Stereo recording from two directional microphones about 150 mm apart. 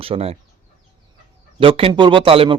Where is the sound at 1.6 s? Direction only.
35° right (ahead or behind).